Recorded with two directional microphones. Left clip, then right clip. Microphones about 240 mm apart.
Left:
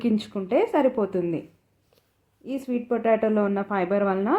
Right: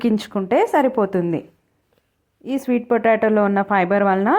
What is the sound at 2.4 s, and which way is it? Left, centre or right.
Speech, right.